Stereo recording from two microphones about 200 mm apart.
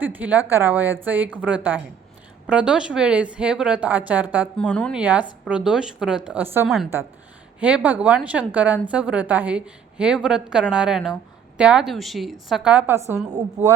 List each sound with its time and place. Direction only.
0.0 s a woman's voice: 10° right (ahead or behind)
4.5 s a woman's voice: 5° left (ahead or behind)
4.9 s a woman's voice: 5° right (ahead or behind)